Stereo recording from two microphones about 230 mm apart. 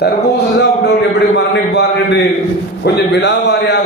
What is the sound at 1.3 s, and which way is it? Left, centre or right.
A man's voice, left.